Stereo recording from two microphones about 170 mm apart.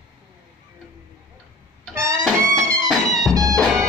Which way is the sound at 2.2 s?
Centre (ahead or behind).